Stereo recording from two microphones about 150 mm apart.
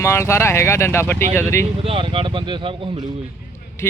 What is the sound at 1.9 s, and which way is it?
Speech, 35° right (ahead or behind).